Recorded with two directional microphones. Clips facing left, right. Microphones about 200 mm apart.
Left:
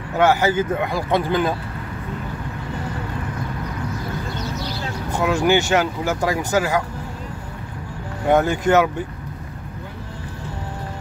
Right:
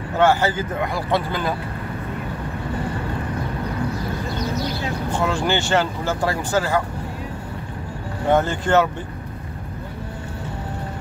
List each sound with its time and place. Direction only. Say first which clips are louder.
0.2 s speech: left 1 dB; 15° left (ahead or behind)
5.2 s speech: left 5 dB; 15° left (ahead or behind)
8.3 s speech: left 2 dB; 15° left (ahead or behind)